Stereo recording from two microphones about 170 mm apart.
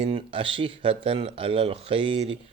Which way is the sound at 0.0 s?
30° right (ahead or behind).